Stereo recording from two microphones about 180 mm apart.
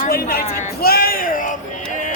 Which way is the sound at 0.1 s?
60° left (ahead or behind).